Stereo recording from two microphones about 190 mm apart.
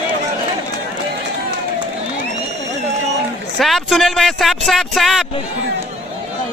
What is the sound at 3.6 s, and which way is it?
Speech, centre (ahead or behind).